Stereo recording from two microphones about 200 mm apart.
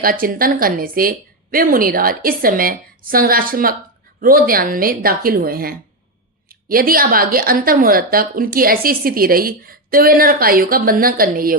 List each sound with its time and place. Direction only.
0.0 s a woman's voice: 45° right (ahead or behind)